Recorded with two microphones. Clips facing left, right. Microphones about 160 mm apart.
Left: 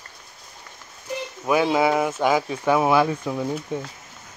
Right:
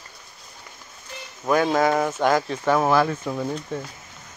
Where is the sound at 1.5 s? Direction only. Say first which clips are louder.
Even; 10° left (ahead or behind).